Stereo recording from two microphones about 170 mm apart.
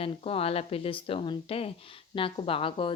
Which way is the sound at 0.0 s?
35° left (ahead or behind).